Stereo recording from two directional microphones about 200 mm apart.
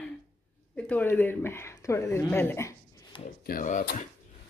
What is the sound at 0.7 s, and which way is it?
Speech, 10° left (ahead or behind).